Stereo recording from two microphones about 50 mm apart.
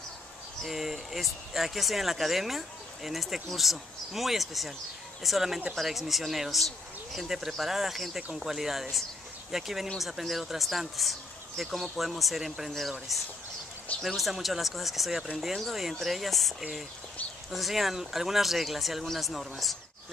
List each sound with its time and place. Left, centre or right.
0.6 s speech: centre
8.2 s speech: right
8.5 s speech: centre